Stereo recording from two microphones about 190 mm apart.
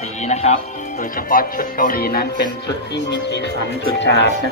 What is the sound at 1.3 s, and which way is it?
Speech, 45° left (ahead or behind).